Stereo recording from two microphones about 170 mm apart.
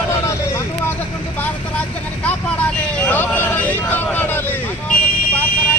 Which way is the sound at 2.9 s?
10° left (ahead or behind).